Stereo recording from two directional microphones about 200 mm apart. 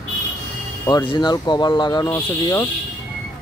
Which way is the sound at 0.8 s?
20° left (ahead or behind).